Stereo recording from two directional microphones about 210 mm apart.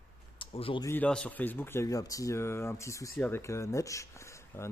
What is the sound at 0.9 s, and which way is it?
Speech, 5° left (ahead or behind).